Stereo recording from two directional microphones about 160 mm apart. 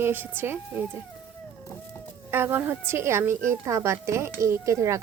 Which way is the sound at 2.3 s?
15° right (ahead or behind).